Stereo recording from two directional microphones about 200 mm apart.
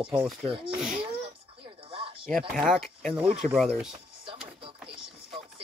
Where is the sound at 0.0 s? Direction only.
5° right (ahead or behind).